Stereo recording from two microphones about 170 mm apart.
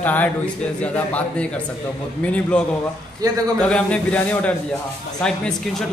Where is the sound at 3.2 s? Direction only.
20° right (ahead or behind).